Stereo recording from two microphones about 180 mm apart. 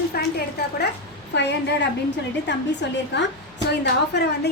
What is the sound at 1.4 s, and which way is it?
A woman's voice, 75° left (ahead or behind).